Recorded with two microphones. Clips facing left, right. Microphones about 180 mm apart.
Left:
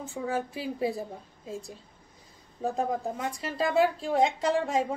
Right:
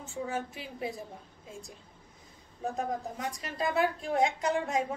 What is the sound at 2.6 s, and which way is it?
Speech, 30° left (ahead or behind).